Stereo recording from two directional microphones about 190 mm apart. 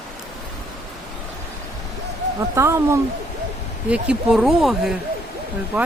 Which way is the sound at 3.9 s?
5° right (ahead or behind).